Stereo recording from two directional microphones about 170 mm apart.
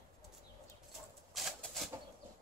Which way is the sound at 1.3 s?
Centre (ahead or behind).